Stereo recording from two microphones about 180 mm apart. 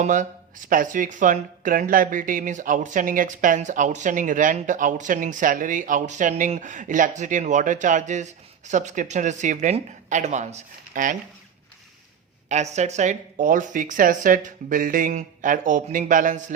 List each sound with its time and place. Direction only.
0.0 s speech: 45° right (ahead or behind)
12.7 s speech: 40° right (ahead or behind)